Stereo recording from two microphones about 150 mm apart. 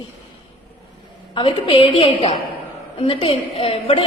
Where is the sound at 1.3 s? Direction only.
35° left (ahead or behind).